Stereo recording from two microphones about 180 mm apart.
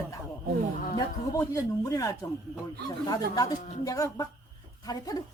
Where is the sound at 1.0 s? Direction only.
20° left (ahead or behind).